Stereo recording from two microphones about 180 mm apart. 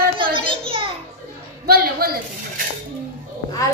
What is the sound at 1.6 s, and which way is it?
Speech, 60° right (ahead or behind).